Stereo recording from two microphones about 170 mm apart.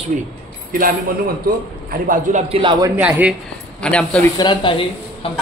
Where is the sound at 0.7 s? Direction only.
55° right (ahead or behind); by 2.7 s 35° right (ahead or behind).